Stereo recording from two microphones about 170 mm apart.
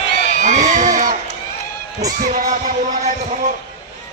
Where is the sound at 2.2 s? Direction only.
50° right (ahead or behind).